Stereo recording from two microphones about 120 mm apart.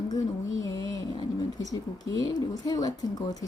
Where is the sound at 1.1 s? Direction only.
35° left (ahead or behind).